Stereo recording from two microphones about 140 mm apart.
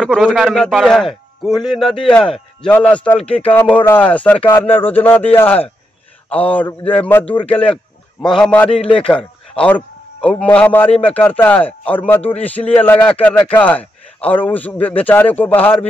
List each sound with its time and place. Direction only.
0.0 s a man's voice: centre (ahead or behind)
3.2 s speech: 45° left (ahead or behind)
3.4 s a man's voice: 10° left (ahead or behind)
6.8 s speech: 40° left (ahead or behind)
7.1 s a man's voice: 15° left (ahead or behind)
8.6 s a man's voice: 40° left (ahead or behind)
9.1 s a sound: 10° left (ahead or behind)
10.4 s a man's voice: 10° left (ahead or behind)